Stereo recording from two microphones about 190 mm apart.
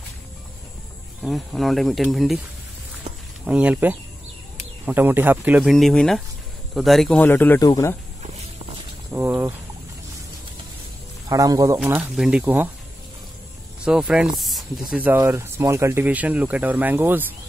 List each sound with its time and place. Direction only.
1.2 s speech: centre (ahead or behind)
3.4 s speech: 5° right (ahead or behind); by 7.9 s 15° left (ahead or behind)
9.1 s speech: 10° right (ahead or behind)
11.2 s speech: 20° right (ahead or behind)
11.8 s speech: 5° right (ahead or behind)
13.8 s speech: 5° right (ahead or behind)